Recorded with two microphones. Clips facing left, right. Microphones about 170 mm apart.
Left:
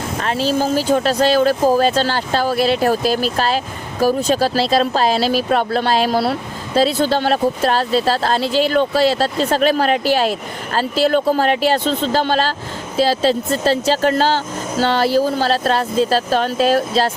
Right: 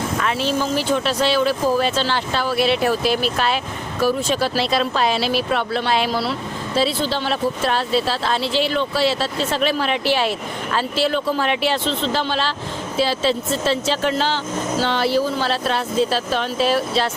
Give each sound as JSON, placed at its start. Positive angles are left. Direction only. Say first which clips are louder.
{"t": 0.2, "sound": "speech", "louder": "left 5 dB", "side_deg": 35}